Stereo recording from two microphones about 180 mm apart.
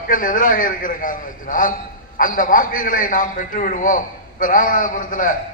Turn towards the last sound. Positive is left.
turn(degrees=45)  # may be behind; listen again after turning